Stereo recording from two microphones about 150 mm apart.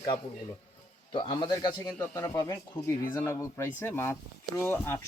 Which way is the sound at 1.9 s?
10° left (ahead or behind).